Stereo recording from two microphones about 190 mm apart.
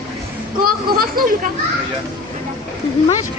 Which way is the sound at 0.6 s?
50° right (ahead or behind).